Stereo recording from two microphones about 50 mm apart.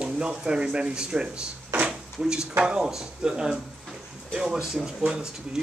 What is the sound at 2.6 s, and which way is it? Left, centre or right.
Speech, centre.